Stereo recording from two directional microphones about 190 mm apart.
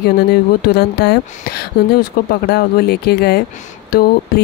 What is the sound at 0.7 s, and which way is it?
Speech, 60° left (ahead or behind).